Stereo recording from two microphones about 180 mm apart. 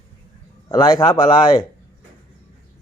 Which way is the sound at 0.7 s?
20° left (ahead or behind).